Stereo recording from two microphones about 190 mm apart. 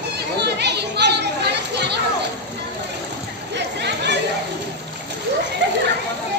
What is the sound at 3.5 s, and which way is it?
Chatter, 65° right (ahead or behind).